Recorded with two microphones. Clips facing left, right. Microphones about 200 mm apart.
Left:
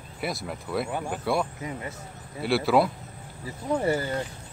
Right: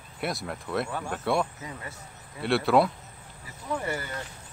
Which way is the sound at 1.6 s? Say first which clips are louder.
Left 5 dB; 20° left (ahead or behind).